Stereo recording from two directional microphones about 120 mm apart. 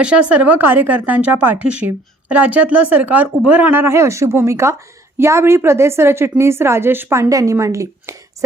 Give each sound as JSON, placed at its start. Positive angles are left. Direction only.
{"t": 0.0, "sound": "a woman's voice", "side_deg": -10}